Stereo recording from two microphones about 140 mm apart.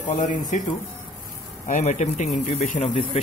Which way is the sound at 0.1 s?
65° left (ahead or behind).